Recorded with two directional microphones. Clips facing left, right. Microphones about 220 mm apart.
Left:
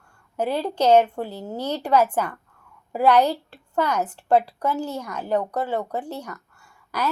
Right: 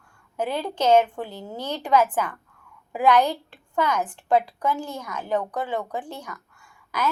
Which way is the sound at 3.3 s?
40° left (ahead or behind).